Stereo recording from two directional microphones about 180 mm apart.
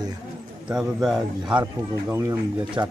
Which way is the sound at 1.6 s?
15° right (ahead or behind).